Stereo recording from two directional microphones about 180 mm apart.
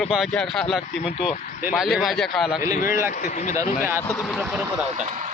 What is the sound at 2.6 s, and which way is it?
Speech, 50° left (ahead or behind).